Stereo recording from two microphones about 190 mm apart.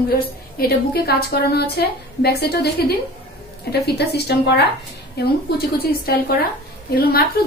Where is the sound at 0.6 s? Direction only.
55° left (ahead or behind).